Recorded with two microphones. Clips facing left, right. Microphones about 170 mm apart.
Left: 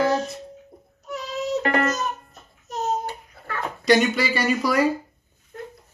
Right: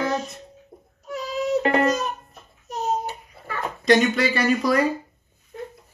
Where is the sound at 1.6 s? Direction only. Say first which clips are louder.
Right 2 dB; 25° right (ahead or behind).